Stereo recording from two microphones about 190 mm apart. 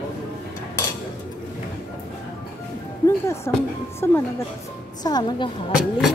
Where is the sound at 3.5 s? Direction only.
10° left (ahead or behind).